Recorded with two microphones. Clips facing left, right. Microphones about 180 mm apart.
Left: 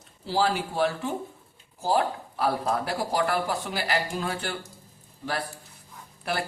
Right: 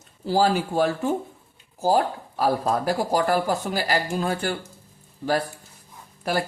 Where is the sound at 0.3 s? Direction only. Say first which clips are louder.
Right 5 dB; 45° right (ahead or behind).